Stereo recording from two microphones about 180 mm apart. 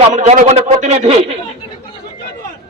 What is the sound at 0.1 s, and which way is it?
A man's voice, 45° right (ahead or behind).